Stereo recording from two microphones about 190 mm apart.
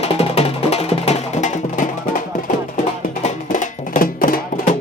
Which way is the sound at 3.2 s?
40° left (ahead or behind).